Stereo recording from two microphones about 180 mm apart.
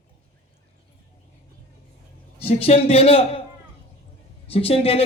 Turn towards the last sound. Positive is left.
turn(degrees=35)  # may be behind; listen again after turning